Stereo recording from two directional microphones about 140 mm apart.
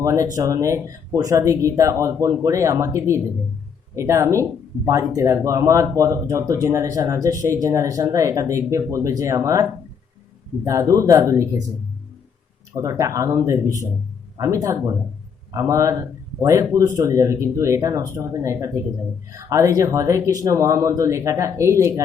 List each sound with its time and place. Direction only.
0.0 s speech: 20° right (ahead or behind)
12.7 s speech: 20° right (ahead or behind)